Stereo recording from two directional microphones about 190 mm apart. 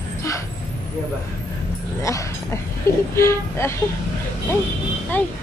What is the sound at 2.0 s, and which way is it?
Speech, 15° left (ahead or behind).